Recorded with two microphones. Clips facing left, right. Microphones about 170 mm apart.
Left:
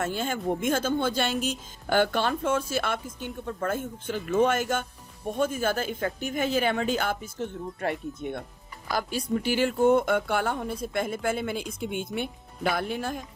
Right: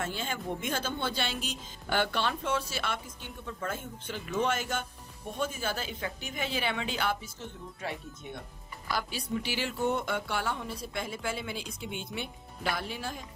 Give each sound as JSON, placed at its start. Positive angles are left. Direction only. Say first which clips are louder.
{"t": 0.0, "sound": "speech", "louder": "left 6 dB", "side_deg": 50}
{"t": 8.9, "sound": "speech", "louder": "left 5 dB", "side_deg": 45}